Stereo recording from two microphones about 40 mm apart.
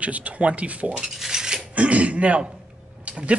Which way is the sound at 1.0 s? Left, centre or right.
Centre.